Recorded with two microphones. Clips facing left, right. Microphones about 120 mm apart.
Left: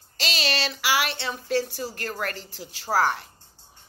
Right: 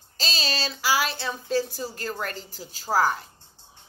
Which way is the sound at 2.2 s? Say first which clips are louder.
Left 2 dB; 65° left (ahead or behind).